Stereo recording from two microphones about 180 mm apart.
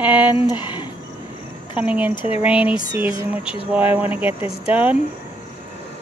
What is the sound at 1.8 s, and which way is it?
Speech, 10° right (ahead or behind).